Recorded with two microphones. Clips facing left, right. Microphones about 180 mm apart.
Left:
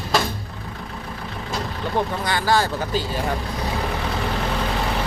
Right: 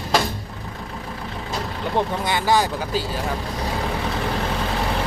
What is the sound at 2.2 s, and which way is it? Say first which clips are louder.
Speech: even; 20° right (ahead or behind).